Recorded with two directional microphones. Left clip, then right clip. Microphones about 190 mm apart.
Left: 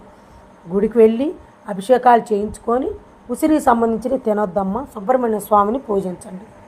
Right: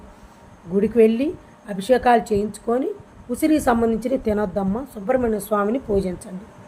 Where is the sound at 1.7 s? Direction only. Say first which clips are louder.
Left 4 dB; centre (ahead or behind).